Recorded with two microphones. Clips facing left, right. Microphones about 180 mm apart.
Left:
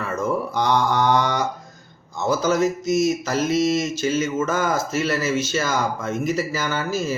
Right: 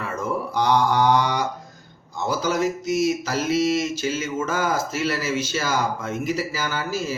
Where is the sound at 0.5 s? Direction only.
10° right (ahead or behind).